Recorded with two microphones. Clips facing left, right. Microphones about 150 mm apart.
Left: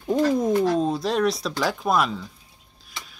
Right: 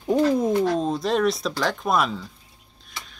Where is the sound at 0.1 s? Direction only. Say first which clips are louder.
Right 1 dB; 5° right (ahead or behind).